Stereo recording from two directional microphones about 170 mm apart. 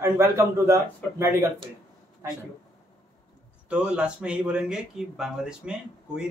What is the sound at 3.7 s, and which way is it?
Speech, 5° right (ahead or behind).